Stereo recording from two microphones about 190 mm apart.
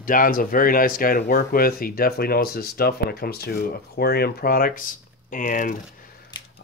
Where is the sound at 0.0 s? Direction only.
45° left (ahead or behind).